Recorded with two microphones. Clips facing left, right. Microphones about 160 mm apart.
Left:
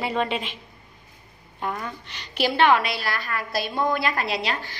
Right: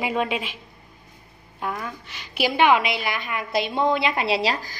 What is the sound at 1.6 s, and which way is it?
A woman's voice, 5° right (ahead or behind).